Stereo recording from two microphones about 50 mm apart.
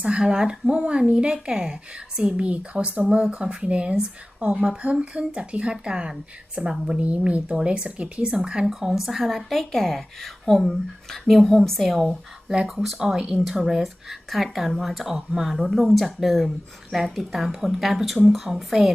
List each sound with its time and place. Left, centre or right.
0.0 s speech: centre
3.1 s speech: centre
8.6 s a woman's voice: centre
12.0 s a woman's voice: centre